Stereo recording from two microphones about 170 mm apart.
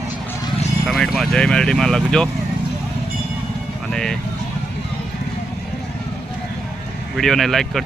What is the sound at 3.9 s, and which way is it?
Speech, 5° left (ahead or behind).